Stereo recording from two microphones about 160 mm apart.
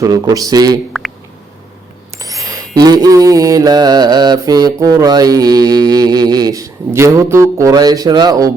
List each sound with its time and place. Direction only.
0.0 s mantra: 20° right (ahead or behind)
2.1 s mantra: 20° right (ahead or behind)